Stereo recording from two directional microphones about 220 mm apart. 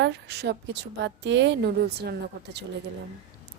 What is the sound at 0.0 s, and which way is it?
A woman's voice, 50° right (ahead or behind).